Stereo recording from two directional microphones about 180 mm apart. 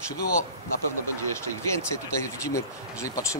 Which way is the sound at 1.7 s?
15° left (ahead or behind).